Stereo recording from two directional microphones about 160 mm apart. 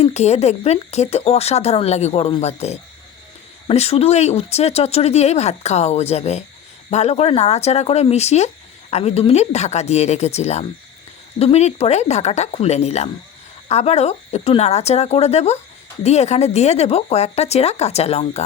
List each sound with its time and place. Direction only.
0.0 s speech: 45° left (ahead or behind)